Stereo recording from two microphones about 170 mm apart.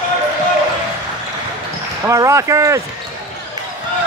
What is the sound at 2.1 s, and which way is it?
Speech, 20° right (ahead or behind).